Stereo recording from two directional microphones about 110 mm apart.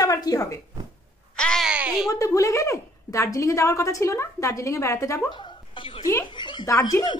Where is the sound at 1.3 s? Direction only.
5° left (ahead or behind).